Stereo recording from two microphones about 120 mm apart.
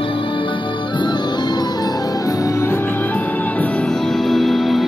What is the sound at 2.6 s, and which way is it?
Music, 15° left (ahead or behind).